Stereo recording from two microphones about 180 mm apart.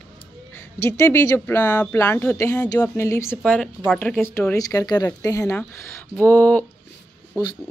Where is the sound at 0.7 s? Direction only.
15° left (ahead or behind).